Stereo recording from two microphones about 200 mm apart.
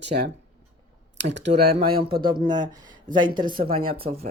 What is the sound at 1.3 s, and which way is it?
Speech, 60° right (ahead or behind).